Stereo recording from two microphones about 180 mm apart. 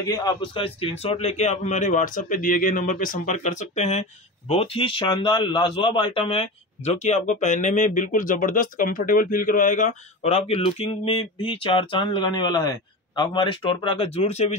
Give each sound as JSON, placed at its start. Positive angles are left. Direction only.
{"t": 0.0, "sound": "a man's voice", "side_deg": 20}